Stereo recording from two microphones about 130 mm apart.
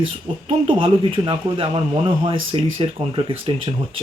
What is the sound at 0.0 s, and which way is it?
A man's voice, 45° right (ahead or behind).